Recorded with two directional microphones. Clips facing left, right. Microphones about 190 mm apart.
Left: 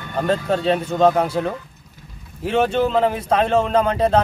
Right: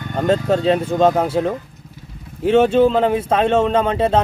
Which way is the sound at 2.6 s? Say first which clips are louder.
Right 4 dB; 5° right (ahead or behind).